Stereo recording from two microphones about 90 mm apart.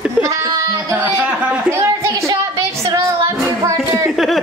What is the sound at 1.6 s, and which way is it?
Speech, 35° right (ahead or behind).